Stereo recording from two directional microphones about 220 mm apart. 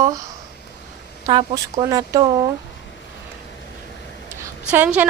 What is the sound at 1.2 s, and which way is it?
A woman's voice, 20° right (ahead or behind).